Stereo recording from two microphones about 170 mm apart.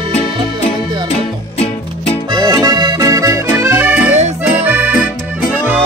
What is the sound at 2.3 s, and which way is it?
Accordion, 25° right (ahead or behind).